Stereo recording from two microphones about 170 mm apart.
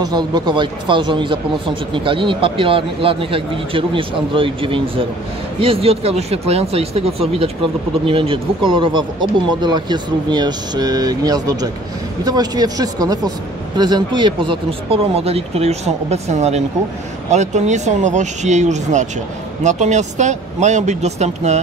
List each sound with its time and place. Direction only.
0.0 s a man's voice: 25° right (ahead or behind); by 21.5 s 40° right (ahead or behind)